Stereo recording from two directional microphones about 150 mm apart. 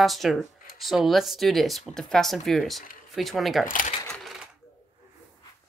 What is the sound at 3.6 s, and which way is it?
Speech, 65° left (ahead or behind).